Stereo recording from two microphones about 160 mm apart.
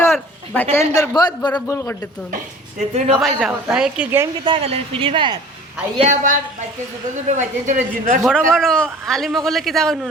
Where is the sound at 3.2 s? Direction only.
5° right (ahead or behind).